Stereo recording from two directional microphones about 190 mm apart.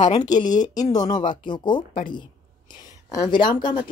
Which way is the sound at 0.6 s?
20° left (ahead or behind).